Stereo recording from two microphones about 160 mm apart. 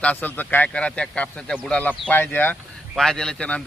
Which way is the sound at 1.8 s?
10° left (ahead or behind).